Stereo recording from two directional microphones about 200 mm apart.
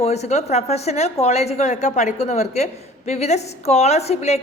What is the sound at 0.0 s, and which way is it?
A woman's voice, 35° left (ahead or behind).